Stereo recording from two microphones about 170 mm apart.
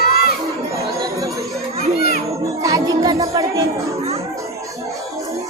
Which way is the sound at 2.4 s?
20° right (ahead or behind).